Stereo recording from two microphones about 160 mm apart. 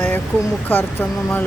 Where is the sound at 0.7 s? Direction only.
15° left (ahead or behind).